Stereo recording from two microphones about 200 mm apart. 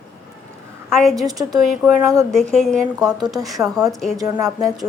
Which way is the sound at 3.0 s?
20° right (ahead or behind).